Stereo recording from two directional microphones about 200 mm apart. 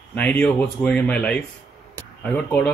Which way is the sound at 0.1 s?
5° left (ahead or behind).